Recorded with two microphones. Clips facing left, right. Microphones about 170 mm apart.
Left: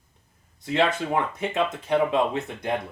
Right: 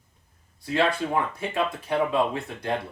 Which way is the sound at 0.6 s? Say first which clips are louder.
Left 1 dB; 20° left (ahead or behind).